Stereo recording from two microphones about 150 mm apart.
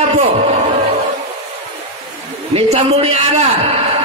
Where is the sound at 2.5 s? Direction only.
40° right (ahead or behind).